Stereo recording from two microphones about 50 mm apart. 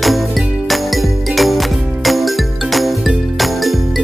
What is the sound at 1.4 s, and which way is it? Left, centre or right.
Music, centre.